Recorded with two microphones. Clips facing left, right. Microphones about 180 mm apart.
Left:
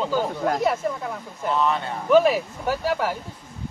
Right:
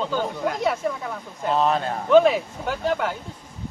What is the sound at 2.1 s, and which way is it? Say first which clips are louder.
Speech: right 1 dB; 5° left (ahead or behind).